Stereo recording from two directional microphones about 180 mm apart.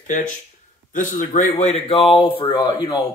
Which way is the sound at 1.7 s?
30° left (ahead or behind).